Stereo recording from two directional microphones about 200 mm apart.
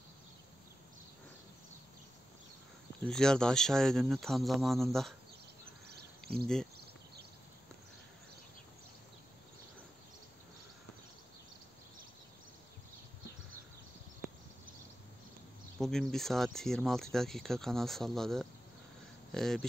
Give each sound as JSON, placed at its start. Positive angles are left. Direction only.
{"t": 3.1, "sound": "speech", "side_deg": 5}
{"t": 5.9, "sound": "a sound", "side_deg": -55}
{"t": 15.8, "sound": "speech", "side_deg": 0}